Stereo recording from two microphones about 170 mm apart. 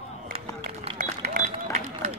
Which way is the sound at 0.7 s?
55° right (ahead or behind).